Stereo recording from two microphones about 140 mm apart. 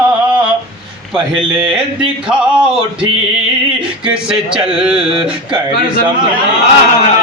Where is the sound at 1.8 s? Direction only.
5° right (ahead or behind).